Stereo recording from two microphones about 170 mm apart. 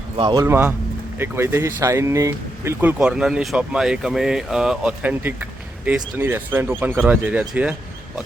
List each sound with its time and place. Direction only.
0.2 s speech: 25° right (ahead or behind)
0.4 s speech: 15° right (ahead or behind)
3.0 s speech: 5° right (ahead or behind)